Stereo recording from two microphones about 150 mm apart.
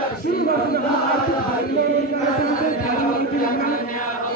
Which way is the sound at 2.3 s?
65° left (ahead or behind).